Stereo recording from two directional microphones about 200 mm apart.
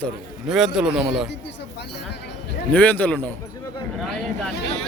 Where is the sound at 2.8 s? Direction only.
10° left (ahead or behind).